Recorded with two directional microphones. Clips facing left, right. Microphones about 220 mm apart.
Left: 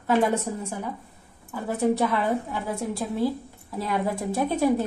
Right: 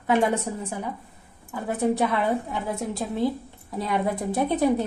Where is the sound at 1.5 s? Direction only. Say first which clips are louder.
Even; 15° right (ahead or behind).